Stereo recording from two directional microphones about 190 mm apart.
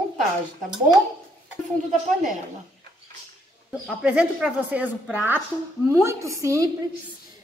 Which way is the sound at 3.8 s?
5° right (ahead or behind).